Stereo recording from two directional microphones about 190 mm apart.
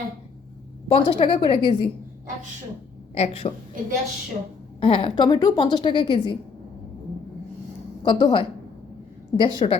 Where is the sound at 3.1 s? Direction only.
30° left (ahead or behind).